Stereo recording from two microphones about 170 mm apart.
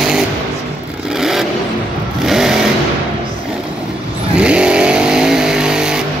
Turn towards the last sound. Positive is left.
turn(degrees=-5)  # may be behind; listen again after turning